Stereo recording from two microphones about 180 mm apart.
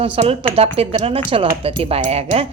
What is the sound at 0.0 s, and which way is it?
Speech, 30° right (ahead or behind).